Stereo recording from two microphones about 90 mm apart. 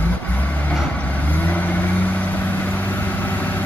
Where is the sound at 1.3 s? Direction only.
20° left (ahead or behind).